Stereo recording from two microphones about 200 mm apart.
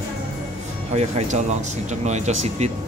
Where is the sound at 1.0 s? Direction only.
35° right (ahead or behind).